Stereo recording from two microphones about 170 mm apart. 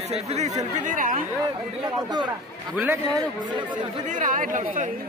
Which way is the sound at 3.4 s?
25° right (ahead or behind).